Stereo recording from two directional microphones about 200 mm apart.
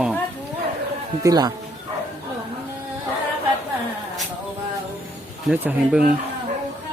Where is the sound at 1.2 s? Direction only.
20° right (ahead or behind).